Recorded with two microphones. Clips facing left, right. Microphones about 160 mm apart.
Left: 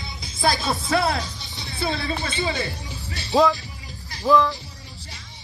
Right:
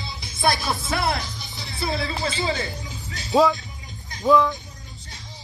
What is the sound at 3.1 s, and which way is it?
Music, 70° left (ahead or behind).